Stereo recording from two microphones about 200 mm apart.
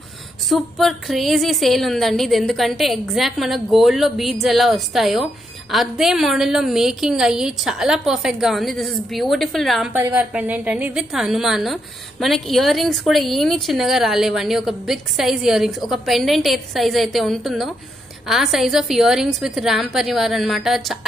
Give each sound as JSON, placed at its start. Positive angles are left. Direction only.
{"t": 0.5, "sound": "a woman's voice", "side_deg": 0}